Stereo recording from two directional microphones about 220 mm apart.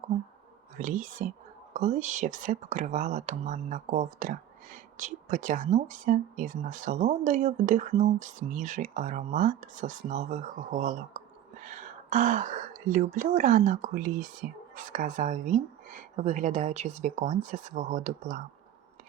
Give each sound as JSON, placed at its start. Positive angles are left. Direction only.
{"t": 0.8, "sound": "speech", "side_deg": -35}